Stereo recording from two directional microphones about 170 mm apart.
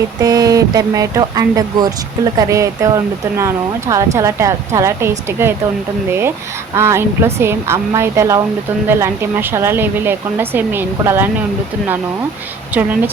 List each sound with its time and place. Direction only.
0.2 s speech: 20° right (ahead or behind)